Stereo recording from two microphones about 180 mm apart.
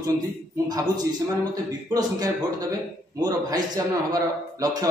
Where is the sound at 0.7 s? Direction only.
20° right (ahead or behind).